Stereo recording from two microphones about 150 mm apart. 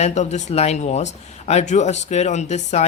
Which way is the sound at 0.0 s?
50° left (ahead or behind).